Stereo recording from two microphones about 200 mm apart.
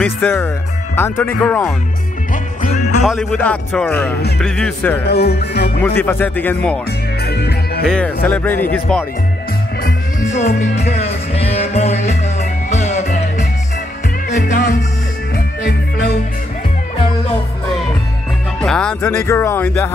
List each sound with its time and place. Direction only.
0.0 s speech: 10° left (ahead or behind)
3.0 s speech: centre (ahead or behind)
5.0 s music: 55° left (ahead or behind)
5.8 s speech: 10° left (ahead or behind)
7.2 s music: 55° left (ahead or behind)
7.8 s speech: 5° left (ahead or behind)
9.8 s music: 35° left (ahead or behind)
13.0 s music: 45° left (ahead or behind)
18.6 s speech: 5° left (ahead or behind)